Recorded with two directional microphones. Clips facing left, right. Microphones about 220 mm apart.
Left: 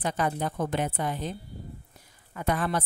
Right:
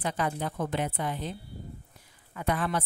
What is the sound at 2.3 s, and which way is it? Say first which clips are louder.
Speech: left 1 dB; 40° left (ahead or behind).